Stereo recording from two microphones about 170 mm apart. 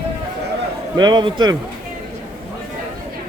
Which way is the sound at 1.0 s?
25° right (ahead or behind).